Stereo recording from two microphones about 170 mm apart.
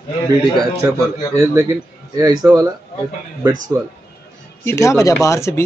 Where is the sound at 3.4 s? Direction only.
20° right (ahead or behind).